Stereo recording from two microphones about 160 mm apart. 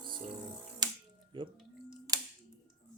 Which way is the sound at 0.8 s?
25° right (ahead or behind).